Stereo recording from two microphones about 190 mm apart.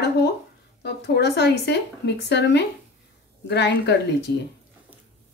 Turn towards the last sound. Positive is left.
turn(degrees=65)  # may be behind; listen again after turning